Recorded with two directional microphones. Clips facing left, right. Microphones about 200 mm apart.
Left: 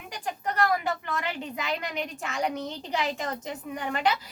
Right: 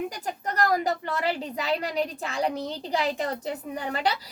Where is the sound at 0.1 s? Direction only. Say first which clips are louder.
Even; 40° right (ahead or behind).